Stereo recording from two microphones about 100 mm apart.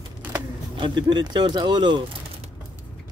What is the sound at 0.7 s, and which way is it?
Speech, 50° right (ahead or behind).